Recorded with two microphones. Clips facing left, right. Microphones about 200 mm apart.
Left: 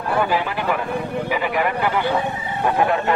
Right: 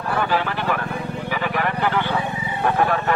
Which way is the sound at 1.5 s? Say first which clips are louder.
Right 1 dB; 10° left (ahead or behind).